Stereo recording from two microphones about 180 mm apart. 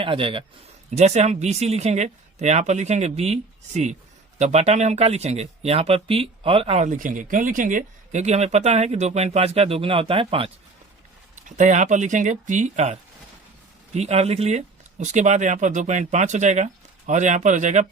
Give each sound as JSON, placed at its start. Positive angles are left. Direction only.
{"t": 0.0, "sound": "a man's voice", "side_deg": -30}
{"t": 11.3, "sound": "speech", "side_deg": -45}